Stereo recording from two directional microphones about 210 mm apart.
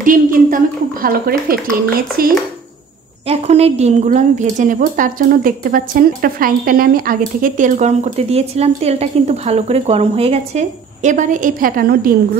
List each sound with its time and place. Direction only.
0.0 s a woman's voice: 40° right (ahead or behind)
3.3 s a woman's voice: 30° right (ahead or behind)